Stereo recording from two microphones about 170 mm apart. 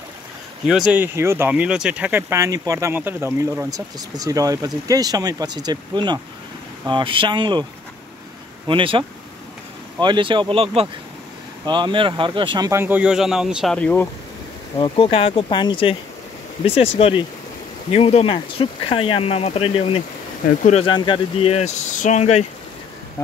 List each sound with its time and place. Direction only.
0.7 s speech: 5° right (ahead or behind); by 7.6 s 25° right (ahead or behind)
8.6 s speech: 30° right (ahead or behind)
10.0 s speech: 30° right (ahead or behind); by 13.7 s 5° right (ahead or behind)
13.7 s speech: 5° left (ahead or behind)
14.8 s speech: 35° left (ahead or behind)
17.9 s speech: 35° left (ahead or behind)
20.4 s speech: 45° left (ahead or behind)
20.8 s speech: 30° left (ahead or behind)